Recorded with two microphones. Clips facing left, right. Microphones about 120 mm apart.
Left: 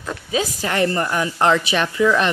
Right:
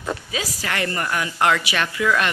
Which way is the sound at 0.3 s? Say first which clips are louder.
Left 5 dB; 25° left (ahead or behind).